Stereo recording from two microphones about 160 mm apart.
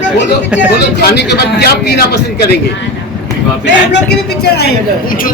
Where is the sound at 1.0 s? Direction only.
90° left.